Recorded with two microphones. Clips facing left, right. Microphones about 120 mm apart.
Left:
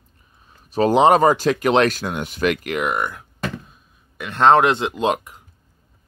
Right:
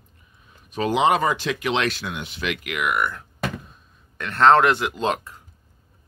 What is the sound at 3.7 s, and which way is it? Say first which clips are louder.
Speech: right 1 dB; 10° left (ahead or behind).